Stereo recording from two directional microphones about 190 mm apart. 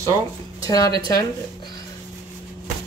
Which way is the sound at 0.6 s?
20° left (ahead or behind).